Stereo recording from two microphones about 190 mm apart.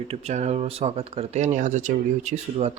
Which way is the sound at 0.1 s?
35° right (ahead or behind).